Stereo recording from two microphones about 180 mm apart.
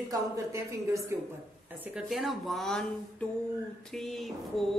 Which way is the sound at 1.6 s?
10° right (ahead or behind).